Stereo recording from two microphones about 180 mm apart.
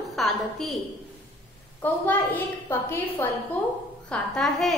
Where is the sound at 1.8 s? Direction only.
10° left (ahead or behind).